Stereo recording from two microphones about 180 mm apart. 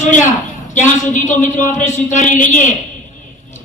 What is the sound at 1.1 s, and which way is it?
A man's voice, 45° left (ahead or behind).